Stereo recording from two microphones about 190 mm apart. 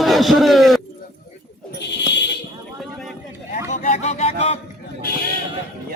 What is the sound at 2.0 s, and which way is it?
Fire alarm, 65° left (ahead or behind).